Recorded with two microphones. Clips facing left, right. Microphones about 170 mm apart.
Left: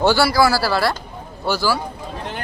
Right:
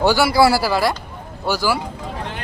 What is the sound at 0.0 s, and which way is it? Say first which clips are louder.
Speech: right 1 dB; 15° right (ahead or behind).